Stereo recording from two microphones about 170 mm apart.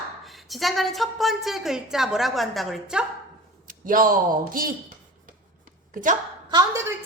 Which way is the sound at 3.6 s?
55° right (ahead or behind).